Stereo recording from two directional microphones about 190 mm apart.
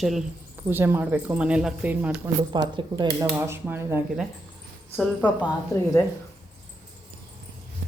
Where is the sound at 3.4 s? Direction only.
15° right (ahead or behind).